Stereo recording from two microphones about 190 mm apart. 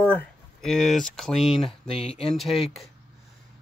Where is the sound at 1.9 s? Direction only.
30° left (ahead or behind).